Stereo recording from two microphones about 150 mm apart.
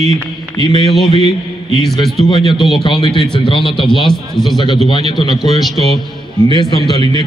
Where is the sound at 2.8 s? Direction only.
35° left (ahead or behind).